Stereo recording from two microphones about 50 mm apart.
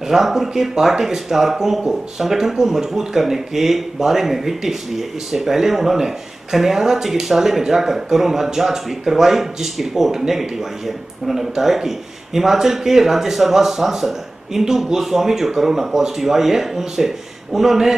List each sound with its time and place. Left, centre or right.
0.1 s speech: centre